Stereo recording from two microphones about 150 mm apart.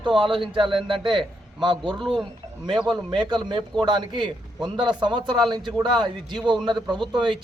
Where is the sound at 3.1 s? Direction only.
30° right (ahead or behind).